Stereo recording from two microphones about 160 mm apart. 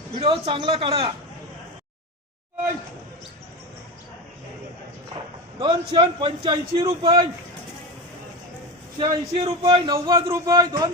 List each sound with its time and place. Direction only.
0.2 s a man's voice: 35° right (ahead or behind)
5.5 s a man's voice: 30° right (ahead or behind)
9.0 s a man's voice: 30° right (ahead or behind)